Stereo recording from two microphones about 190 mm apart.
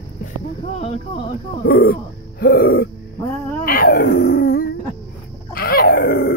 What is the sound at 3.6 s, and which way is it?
Dog, 50° left (ahead or behind).